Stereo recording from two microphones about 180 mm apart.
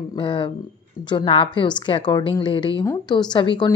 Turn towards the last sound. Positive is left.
turn(degrees=25)  # may be behind; listen again after turning